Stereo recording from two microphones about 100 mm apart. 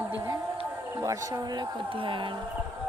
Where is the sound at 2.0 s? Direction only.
60° right (ahead or behind).